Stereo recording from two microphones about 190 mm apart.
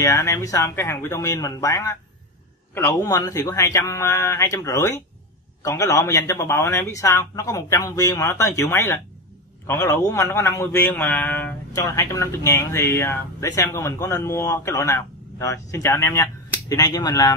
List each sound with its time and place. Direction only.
0.0 s a man's voice: 15° left (ahead or behind)